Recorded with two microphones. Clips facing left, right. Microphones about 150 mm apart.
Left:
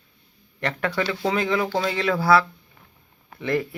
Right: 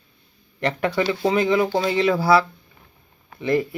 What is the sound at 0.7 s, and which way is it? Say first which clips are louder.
Speech: right 3 dB; 15° right (ahead or behind).